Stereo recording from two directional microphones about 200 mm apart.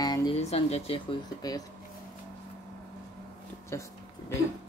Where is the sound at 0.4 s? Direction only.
30° left (ahead or behind).